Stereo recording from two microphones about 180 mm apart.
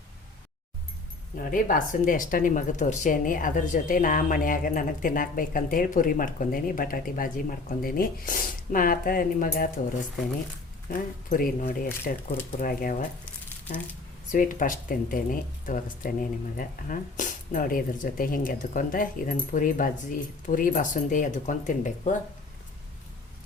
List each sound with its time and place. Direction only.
1.4 s a woman's voice: 50° left (ahead or behind)
10.8 s a woman's voice: 50° left (ahead or behind)
14.3 s a woman's voice: 50° left (ahead or behind)